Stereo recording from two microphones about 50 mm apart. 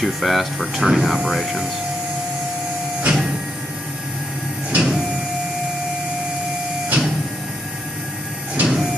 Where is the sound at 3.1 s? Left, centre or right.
Centre.